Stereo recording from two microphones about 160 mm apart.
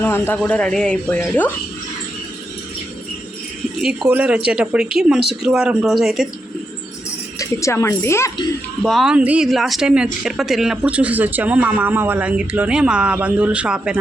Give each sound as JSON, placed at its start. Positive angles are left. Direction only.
{"t": 0.0, "sound": "speech", "side_deg": 10}
{"t": 3.8, "sound": "speech", "side_deg": -5}
{"t": 7.3, "sound": "a woman's voice", "side_deg": 20}
{"t": 8.8, "sound": "speech", "side_deg": 0}